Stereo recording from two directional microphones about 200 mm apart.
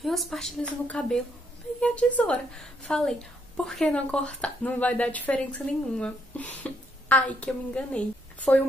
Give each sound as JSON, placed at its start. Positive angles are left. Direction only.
{"t": 0.0, "sound": "a woman's voice", "side_deg": 0}